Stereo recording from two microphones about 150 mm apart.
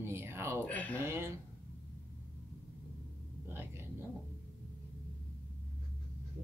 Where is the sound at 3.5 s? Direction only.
15° right (ahead or behind).